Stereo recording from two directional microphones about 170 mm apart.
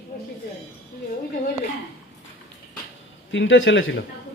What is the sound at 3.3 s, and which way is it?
Speech, 90° left.